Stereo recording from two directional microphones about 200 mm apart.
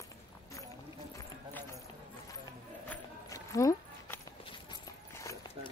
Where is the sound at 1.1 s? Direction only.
10° left (ahead or behind).